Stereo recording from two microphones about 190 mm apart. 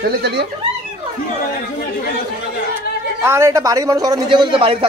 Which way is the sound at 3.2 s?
15° right (ahead or behind).